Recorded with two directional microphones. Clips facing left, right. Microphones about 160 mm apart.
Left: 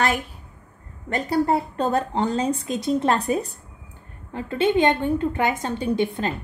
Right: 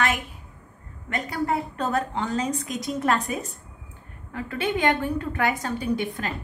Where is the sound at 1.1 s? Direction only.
35° left (ahead or behind).